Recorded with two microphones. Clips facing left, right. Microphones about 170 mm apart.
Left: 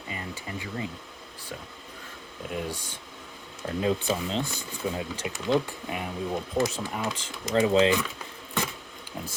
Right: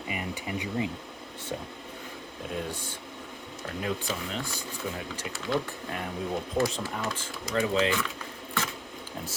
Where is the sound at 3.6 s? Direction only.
25° left (ahead or behind).